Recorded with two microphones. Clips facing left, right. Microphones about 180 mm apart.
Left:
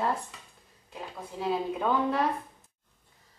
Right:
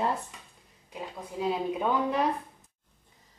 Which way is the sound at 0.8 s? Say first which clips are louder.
Right 1 dB; 15° right (ahead or behind).